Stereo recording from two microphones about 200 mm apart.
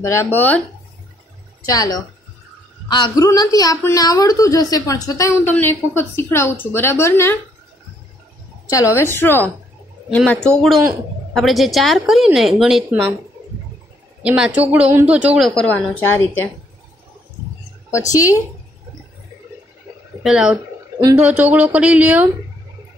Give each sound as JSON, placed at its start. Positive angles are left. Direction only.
{"t": 0.0, "sound": "a woman's voice", "side_deg": 10}
{"t": 1.7, "sound": "a woman's voice", "side_deg": 20}
{"t": 8.6, "sound": "a woman's voice", "side_deg": 15}
{"t": 14.2, "sound": "a woman's voice", "side_deg": -5}
{"t": 18.1, "sound": "a woman's voice", "side_deg": 15}
{"t": 20.2, "sound": "a woman's voice", "side_deg": -5}